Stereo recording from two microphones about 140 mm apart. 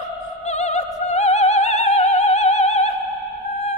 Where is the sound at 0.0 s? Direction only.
55° left (ahead or behind).